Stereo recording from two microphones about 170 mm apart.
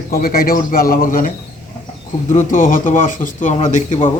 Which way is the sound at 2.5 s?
50° left (ahead or behind).